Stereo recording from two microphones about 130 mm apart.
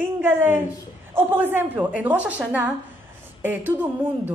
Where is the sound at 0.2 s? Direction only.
15° right (ahead or behind).